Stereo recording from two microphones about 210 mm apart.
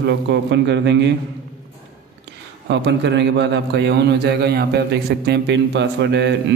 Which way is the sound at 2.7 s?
55° right (ahead or behind).